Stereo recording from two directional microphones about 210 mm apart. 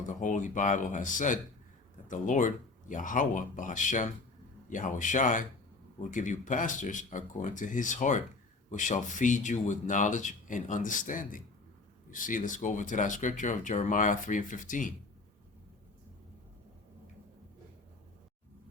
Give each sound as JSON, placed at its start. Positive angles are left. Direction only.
{"t": 0.1, "sound": "speech", "side_deg": 35}